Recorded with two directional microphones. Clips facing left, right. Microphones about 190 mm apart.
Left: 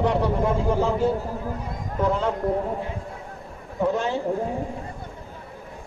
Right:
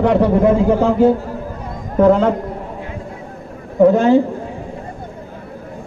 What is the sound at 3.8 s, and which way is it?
Speech, 85° right.